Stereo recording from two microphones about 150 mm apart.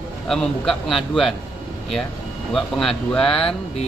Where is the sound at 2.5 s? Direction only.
5° left (ahead or behind).